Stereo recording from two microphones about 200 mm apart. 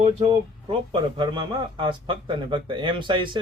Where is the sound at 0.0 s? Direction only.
30° right (ahead or behind).